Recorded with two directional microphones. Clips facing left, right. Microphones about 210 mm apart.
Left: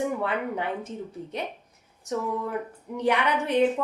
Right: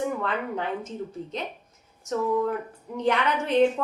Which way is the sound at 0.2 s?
10° left (ahead or behind).